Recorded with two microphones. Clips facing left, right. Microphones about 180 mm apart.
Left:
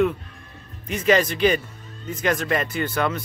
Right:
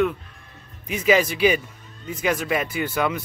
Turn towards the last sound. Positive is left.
turn(degrees=-10)  # may be behind; listen again after turning